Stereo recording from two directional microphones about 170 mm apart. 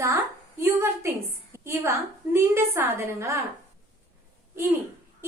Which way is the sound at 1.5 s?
15° right (ahead or behind).